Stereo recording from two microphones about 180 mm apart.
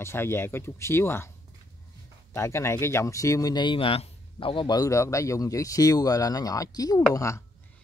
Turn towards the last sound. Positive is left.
turn(degrees=15)  # may be behind; listen again after turning